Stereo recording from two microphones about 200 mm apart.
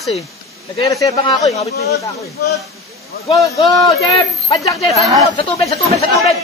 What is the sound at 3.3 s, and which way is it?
Speech, 15° left (ahead or behind).